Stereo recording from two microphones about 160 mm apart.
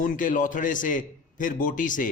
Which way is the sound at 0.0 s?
55° left (ahead or behind).